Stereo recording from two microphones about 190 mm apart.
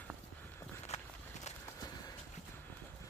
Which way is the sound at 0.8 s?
35° left (ahead or behind).